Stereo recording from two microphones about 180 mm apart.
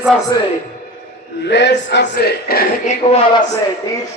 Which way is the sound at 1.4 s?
70° left (ahead or behind).